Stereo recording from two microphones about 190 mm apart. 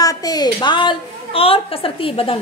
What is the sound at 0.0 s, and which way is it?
A woman's voice, 20° left (ahead or behind).